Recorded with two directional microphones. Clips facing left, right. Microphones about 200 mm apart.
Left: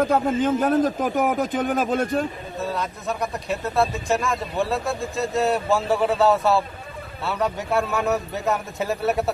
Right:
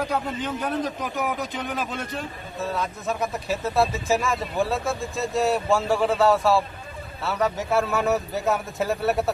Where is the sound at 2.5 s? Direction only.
Centre (ahead or behind).